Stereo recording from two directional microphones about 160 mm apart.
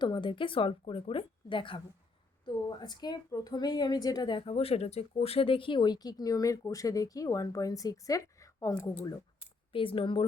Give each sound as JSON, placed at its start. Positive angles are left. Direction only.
{"t": 0.0, "sound": "a woman's voice", "side_deg": 30}
{"t": 9.7, "sound": "speech", "side_deg": 35}